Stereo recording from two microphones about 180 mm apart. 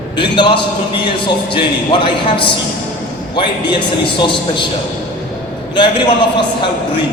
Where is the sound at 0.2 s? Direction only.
25° left (ahead or behind).